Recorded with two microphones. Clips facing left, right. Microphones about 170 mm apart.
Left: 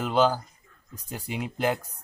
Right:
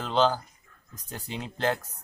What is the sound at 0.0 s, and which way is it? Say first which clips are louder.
Speech: left 2 dB; 10° left (ahead or behind).